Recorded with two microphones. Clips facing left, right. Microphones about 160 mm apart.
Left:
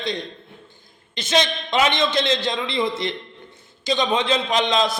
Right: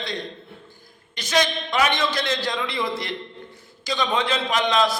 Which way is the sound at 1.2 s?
25° left (ahead or behind).